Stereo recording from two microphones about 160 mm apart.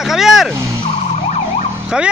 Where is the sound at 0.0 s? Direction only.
Centre (ahead or behind).